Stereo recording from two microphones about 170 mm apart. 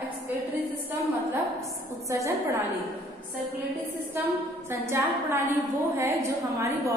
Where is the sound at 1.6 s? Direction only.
20° right (ahead or behind).